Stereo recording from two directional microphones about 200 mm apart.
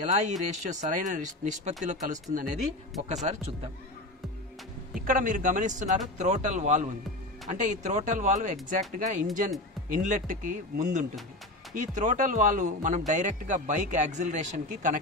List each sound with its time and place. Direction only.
0.0 s speech: 35° right (ahead or behind)
5.0 s speech: 40° right (ahead or behind)